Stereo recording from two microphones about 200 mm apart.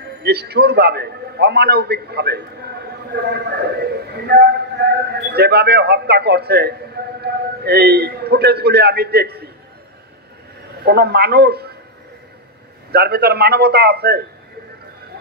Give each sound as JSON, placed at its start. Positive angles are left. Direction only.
{"t": 0.2, "sound": "speech", "side_deg": -55}
{"t": 10.8, "sound": "speech", "side_deg": -55}
{"t": 12.9, "sound": "speech", "side_deg": -55}